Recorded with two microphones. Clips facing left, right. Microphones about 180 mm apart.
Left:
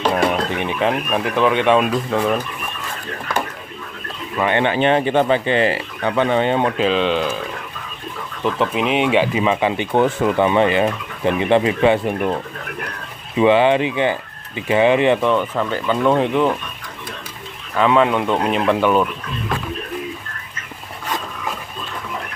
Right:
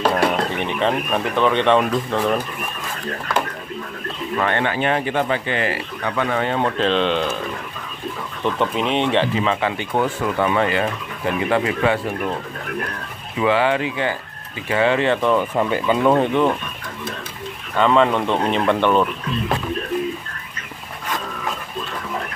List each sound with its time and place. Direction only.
0.1 s speech: 15° left (ahead or behind)
4.4 s speech: 15° left (ahead or behind)
6.8 s speech: 5° left (ahead or behind)
8.5 s speech: 5° left (ahead or behind); by 12.0 s 20° left (ahead or behind)
13.4 s speech: 20° left (ahead or behind)
15.5 s speech: 10° right (ahead or behind)
17.7 s speech: 5° left (ahead or behind)